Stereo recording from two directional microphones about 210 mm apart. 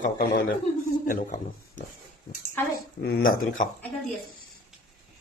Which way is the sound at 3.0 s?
50° left (ahead or behind).